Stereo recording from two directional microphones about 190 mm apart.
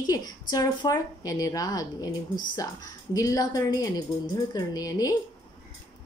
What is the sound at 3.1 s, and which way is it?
Speech, 20° left (ahead or behind).